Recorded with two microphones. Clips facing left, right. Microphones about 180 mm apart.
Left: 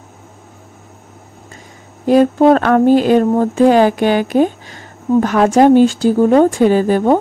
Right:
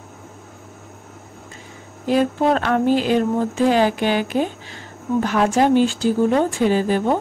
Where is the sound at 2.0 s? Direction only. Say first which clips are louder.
Left 8 dB; 45° left (ahead or behind).